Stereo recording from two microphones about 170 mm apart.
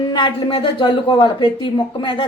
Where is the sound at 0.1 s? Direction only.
25° left (ahead or behind).